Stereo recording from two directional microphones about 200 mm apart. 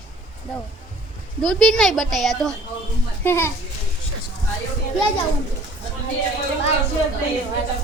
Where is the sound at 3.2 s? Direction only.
10° left (ahead or behind).